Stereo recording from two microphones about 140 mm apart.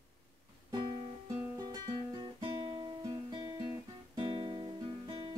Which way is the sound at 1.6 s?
30° right (ahead or behind).